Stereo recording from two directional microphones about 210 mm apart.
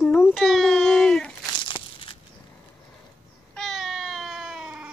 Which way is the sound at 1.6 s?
25° left (ahead or behind).